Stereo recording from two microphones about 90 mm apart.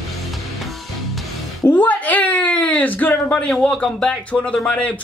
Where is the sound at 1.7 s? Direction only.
20° left (ahead or behind).